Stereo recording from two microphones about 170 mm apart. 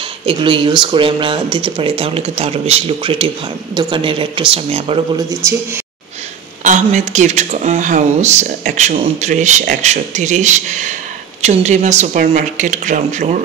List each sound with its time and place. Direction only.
0.2 s speech: 30° right (ahead or behind)
5.1 s speech: 20° right (ahead or behind)
6.6 s speech: 45° right (ahead or behind)